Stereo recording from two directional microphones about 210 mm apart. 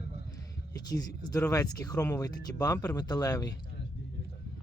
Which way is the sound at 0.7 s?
20° left (ahead or behind).